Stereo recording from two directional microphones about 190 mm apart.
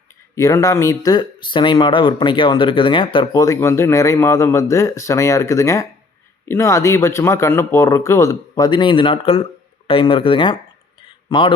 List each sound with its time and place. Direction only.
0.3 s a man's voice: 15° left (ahead or behind)